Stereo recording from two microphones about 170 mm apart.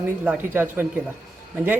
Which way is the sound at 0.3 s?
10° right (ahead or behind).